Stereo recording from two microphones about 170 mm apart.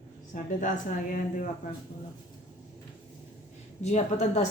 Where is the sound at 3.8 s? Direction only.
40° left (ahead or behind).